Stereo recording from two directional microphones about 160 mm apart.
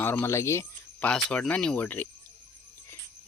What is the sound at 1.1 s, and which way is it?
Speech, 5° left (ahead or behind).